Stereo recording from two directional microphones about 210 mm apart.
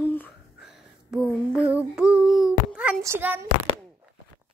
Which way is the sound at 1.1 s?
5° right (ahead or behind).